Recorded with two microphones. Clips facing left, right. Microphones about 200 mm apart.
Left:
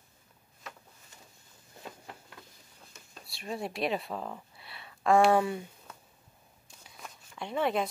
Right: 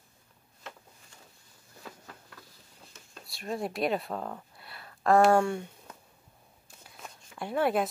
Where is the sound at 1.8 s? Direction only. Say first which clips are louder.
Left 1 dB; 25° left (ahead or behind).